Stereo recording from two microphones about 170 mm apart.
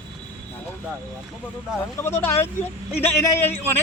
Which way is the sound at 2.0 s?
15° left (ahead or behind).